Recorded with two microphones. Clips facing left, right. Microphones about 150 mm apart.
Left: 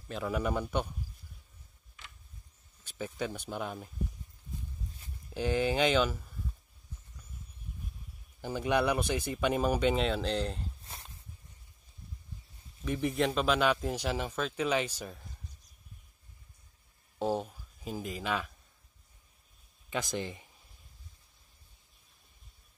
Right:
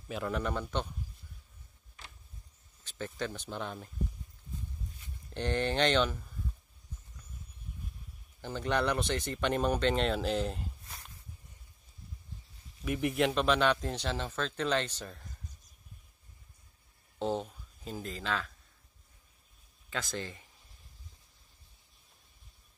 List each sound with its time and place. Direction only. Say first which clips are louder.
0.1 s speech: left 2 dB; 5° left (ahead or behind)
2.8 s speech: left 1 dB; 10° left (ahead or behind)
5.3 s speech: left 2 dB; 5° left (ahead or behind)
8.4 s speech: left 2 dB; 10° left (ahead or behind)
12.8 s speech: even; 5° right (ahead or behind)
17.2 s speech: left 1 dB; 10° left (ahead or behind)
19.9 s speech: left 3 dB; 15° left (ahead or behind)